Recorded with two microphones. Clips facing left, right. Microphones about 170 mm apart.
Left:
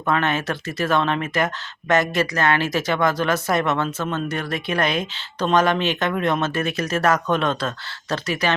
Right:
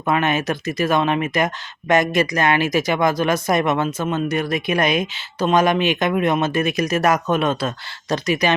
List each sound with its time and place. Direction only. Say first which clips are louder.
0.0 s speech: right 2 dB; 10° right (ahead or behind)